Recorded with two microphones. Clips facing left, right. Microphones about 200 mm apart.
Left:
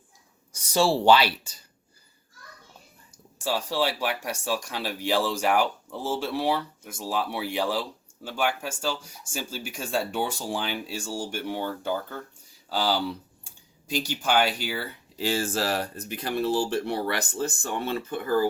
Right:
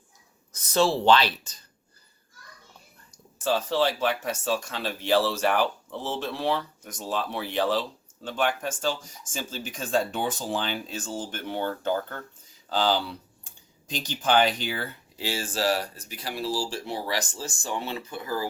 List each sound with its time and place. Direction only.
0.5 s speech: 10° left (ahead or behind)
3.4 s speech: 10° left (ahead or behind)
15.5 s speech: 10° right (ahead or behind)
16.2 s speech: 55° left (ahead or behind)